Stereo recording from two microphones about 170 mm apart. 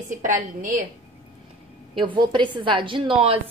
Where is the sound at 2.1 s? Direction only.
25° right (ahead or behind).